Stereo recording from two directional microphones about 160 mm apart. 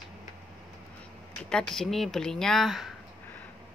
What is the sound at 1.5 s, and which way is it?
Speech, 5° left (ahead or behind).